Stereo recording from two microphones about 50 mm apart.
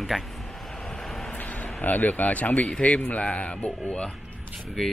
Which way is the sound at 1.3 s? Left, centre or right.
Left.